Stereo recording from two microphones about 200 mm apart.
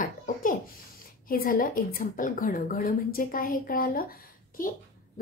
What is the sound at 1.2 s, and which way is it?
A woman's voice, 45° left (ahead or behind).